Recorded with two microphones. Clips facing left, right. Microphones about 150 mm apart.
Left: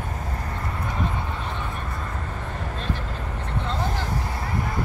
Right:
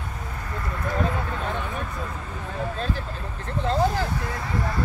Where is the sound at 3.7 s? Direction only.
40° right (ahead or behind).